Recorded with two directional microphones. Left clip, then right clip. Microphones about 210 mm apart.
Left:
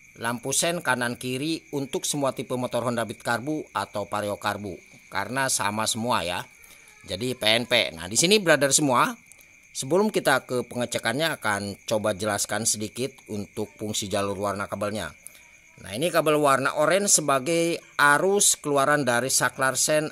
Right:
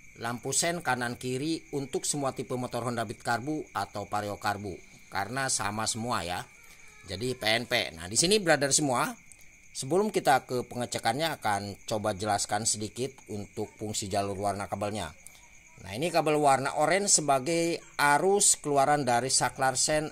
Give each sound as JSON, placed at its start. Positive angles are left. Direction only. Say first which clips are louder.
{"t": 0.2, "sound": "speech", "louder": "left 5 dB", "side_deg": 25}